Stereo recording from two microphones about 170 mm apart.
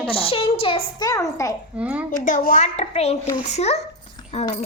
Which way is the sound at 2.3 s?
50° left (ahead or behind).